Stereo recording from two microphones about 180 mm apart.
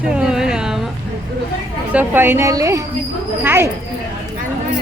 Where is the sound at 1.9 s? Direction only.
10° right (ahead or behind).